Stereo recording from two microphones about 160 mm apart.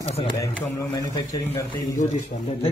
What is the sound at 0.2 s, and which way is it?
A man's voice, 30° left (ahead or behind).